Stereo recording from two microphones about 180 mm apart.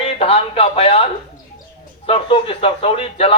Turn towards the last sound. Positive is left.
turn(degrees=30)  # may be behind; listen again after turning